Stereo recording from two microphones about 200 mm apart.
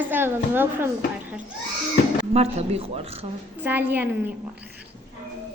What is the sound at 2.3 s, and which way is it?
Speech, 30° right (ahead or behind).